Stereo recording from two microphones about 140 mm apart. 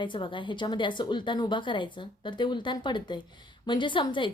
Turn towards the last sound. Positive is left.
turn(degrees=35)  # may be behind; listen again after turning